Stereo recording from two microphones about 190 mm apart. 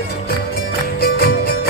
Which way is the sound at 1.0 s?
55° left (ahead or behind).